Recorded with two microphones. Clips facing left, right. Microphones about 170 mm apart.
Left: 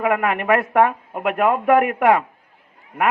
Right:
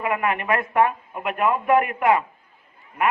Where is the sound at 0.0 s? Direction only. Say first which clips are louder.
Left 4 dB; 75° left (ahead or behind).